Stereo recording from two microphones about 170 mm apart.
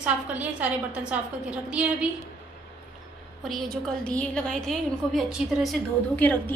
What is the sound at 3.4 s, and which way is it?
A woman's voice, centre (ahead or behind).